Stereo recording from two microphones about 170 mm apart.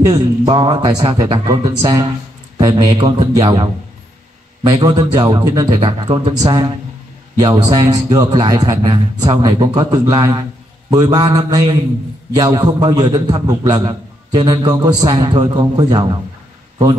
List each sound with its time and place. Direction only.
0.0 s a man's voice: 25° right (ahead or behind)
4.8 s a man's voice: 25° right (ahead or behind)